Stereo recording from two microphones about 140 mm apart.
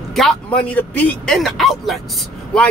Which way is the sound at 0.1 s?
Centre (ahead or behind).